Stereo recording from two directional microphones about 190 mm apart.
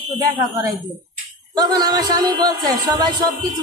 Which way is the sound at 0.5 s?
20° right (ahead or behind).